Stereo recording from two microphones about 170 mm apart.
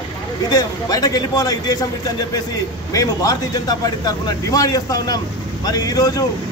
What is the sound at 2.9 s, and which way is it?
Speech, 20° left (ahead or behind).